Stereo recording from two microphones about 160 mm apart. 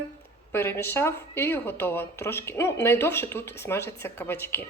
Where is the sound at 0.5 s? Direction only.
15° left (ahead or behind).